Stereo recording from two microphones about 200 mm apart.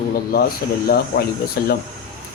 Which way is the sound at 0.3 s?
50° left (ahead or behind).